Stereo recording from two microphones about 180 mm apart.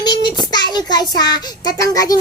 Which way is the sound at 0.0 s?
25° left (ahead or behind).